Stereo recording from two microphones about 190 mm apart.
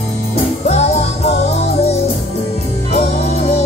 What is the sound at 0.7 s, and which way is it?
Music, 35° left (ahead or behind).